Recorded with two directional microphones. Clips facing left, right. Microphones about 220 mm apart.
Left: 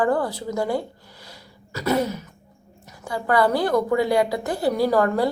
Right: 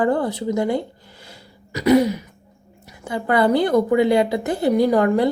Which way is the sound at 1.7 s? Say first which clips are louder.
Right 7 dB; 15° right (ahead or behind).